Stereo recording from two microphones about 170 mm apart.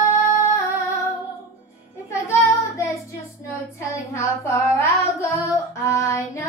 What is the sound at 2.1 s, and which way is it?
Child singing, 15° left (ahead or behind).